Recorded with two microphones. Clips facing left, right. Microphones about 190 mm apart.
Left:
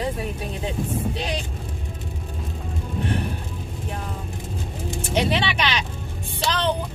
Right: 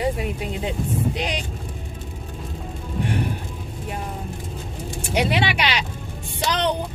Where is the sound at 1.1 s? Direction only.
15° right (ahead or behind).